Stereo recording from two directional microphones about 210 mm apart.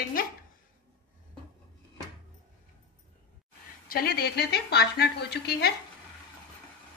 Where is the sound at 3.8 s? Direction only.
45° left (ahead or behind).